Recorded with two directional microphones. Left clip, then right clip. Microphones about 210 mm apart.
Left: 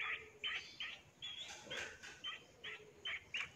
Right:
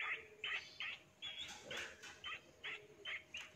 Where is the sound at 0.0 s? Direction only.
Centre (ahead or behind).